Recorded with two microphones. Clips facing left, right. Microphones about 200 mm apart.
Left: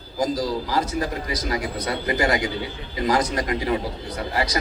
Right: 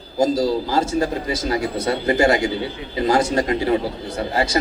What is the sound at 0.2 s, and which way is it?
Speech, 25° right (ahead or behind).